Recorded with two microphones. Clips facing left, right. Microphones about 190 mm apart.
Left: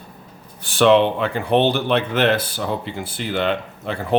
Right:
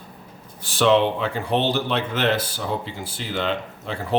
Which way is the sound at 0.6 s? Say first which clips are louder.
Left 4 dB; 60° left (ahead or behind).